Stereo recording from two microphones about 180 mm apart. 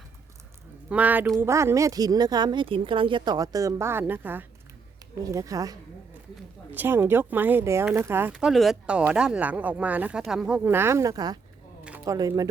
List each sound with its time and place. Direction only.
0.9 s speech: 10° right (ahead or behind)
11.9 s a sound: 10° right (ahead or behind)
12.1 s speech: 20° right (ahead or behind)